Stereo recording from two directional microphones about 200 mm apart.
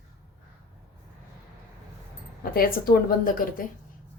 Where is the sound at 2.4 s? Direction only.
45° left (ahead or behind).